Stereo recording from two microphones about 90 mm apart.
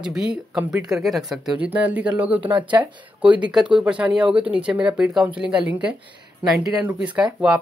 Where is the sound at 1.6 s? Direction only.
15° right (ahead or behind).